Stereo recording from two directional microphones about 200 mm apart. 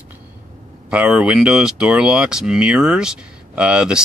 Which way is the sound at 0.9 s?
5° right (ahead or behind).